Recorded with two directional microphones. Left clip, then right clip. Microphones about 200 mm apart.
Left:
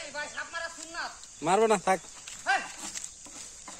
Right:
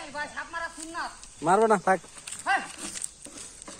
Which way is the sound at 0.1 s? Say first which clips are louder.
Right 3 dB; 10° right (ahead or behind).